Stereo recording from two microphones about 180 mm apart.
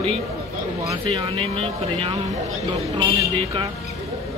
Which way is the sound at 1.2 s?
35° right (ahead or behind).